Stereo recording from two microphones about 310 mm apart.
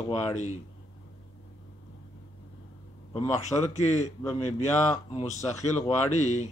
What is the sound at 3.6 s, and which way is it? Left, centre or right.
A man's voice, left.